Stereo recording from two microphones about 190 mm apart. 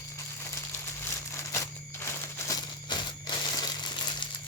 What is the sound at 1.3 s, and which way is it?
Crumpling, 15° left (ahead or behind).